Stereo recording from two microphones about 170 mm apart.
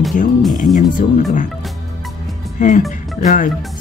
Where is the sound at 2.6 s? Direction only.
50° left (ahead or behind).